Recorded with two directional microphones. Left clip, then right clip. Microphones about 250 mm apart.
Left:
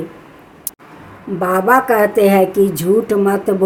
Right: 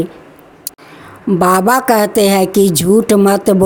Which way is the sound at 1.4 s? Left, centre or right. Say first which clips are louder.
Right 1 dB; right.